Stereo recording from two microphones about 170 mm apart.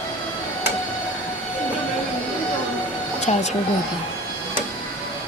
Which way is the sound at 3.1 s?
45° left (ahead or behind).